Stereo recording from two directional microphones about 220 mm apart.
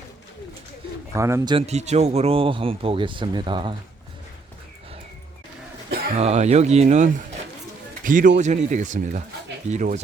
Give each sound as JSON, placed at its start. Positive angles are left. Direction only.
{"t": 1.1, "sound": "speech", "side_deg": -15}
{"t": 6.1, "sound": "a man's voice", "side_deg": -30}